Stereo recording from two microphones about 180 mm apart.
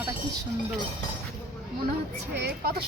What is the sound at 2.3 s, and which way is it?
Speech, 65° right (ahead or behind).